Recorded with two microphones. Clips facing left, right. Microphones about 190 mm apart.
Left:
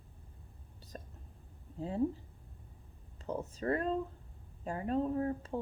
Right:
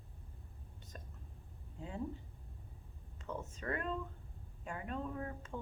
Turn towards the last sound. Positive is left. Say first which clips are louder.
# left 9 dB
turn(degrees=35)  # may be behind; listen again after turning